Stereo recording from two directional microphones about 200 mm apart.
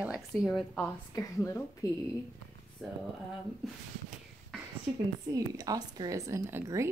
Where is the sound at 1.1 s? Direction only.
15° left (ahead or behind).